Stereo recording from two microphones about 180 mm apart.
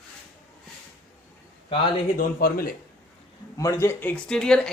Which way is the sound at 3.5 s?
15° left (ahead or behind).